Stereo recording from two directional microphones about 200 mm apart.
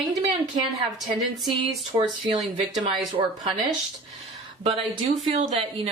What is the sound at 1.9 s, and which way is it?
Speech, 20° right (ahead or behind).